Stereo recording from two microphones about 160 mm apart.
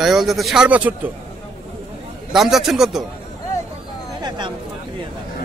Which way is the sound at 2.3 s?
Centre (ahead or behind).